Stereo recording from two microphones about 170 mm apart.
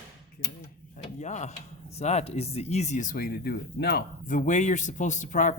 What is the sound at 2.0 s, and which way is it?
Speech, 40° left (ahead or behind).